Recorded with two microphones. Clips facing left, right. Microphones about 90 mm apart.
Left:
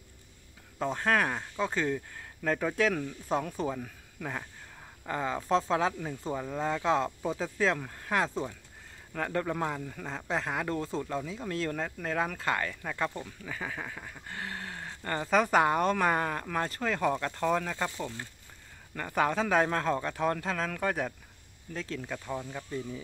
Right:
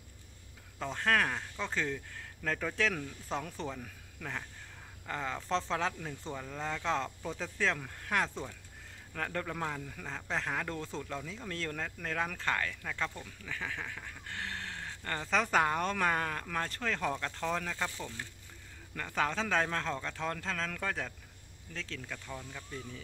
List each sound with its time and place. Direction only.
0.7 s speech: 10° left (ahead or behind)
18.9 s speech: 15° left (ahead or behind)